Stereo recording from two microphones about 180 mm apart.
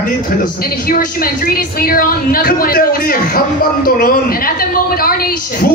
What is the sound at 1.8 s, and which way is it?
A woman's voice, 55° left (ahead or behind).